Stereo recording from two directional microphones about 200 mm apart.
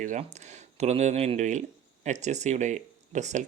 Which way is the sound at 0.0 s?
35° right (ahead or behind).